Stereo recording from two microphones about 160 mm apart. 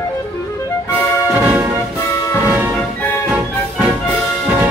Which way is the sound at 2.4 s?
15° right (ahead or behind).